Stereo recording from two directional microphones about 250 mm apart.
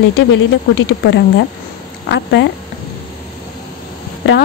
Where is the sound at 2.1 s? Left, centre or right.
Left.